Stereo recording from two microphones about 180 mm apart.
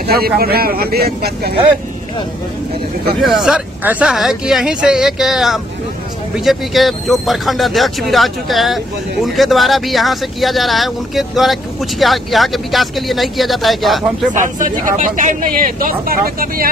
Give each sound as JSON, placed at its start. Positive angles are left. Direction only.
{"t": 0.0, "sound": "speech", "side_deg": -55}
{"t": 3.2, "sound": "speech", "side_deg": 0}
{"t": 14.3, "sound": "speech", "side_deg": -45}